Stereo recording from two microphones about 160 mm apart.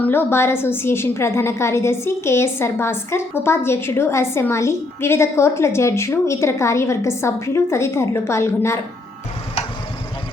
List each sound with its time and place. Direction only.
0.0 s a woman's voice: 15° left (ahead or behind)